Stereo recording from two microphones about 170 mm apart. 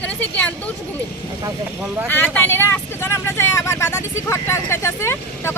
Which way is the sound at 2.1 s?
10° left (ahead or behind).